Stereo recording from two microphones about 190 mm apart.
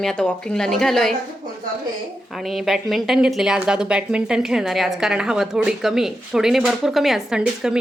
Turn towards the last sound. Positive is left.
turn(degrees=-5)  # may be behind; listen again after turning